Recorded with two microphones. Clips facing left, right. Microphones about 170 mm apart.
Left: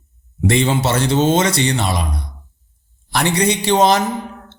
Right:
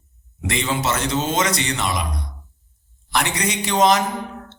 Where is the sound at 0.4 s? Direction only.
30° left (ahead or behind).